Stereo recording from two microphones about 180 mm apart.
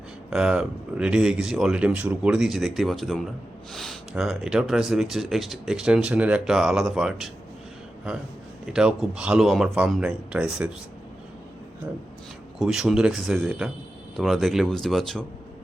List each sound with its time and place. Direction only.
0.3 s speech: 5° right (ahead or behind)
8.6 s speech: 5° right (ahead or behind)
12.5 s speech: 5° right (ahead or behind)